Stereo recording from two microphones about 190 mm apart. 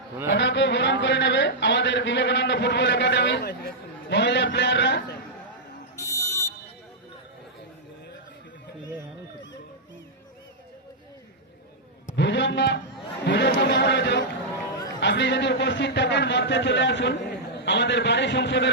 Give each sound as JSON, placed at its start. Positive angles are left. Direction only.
{"t": 0.3, "sound": "a man's voice", "side_deg": 70}
{"t": 6.0, "sound": "fire alarm", "side_deg": 15}
{"t": 12.1, "sound": "a sound", "side_deg": 65}
{"t": 15.0, "sound": "a man's voice", "side_deg": 65}